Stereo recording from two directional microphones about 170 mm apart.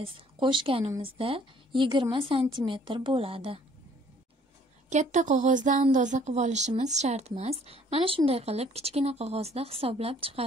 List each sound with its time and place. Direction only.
0.0 s a woman's voice: 30° right (ahead or behind)
4.8 s speech: 45° right (ahead or behind)